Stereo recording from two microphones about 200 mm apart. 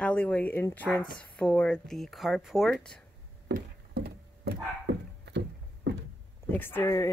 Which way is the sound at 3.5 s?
50° right (ahead or behind).